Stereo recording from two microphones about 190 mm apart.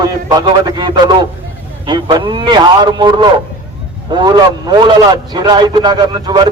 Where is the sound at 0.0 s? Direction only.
20° right (ahead or behind).